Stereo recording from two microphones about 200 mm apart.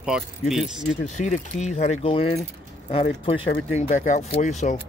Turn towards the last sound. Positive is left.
turn(degrees=35)  # may be behind; listen again after turning